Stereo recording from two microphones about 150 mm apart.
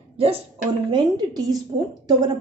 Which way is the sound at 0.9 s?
30° right (ahead or behind).